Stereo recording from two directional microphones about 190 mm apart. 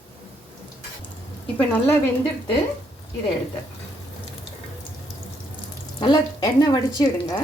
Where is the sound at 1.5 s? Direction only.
10° left (ahead or behind).